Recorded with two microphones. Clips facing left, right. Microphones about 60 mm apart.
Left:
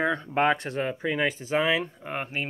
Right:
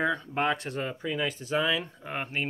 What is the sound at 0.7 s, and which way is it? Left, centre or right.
Speech, left.